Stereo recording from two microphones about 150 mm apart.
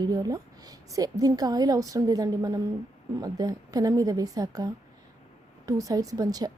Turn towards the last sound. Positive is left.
turn(degrees=-25)  # may be behind; listen again after turning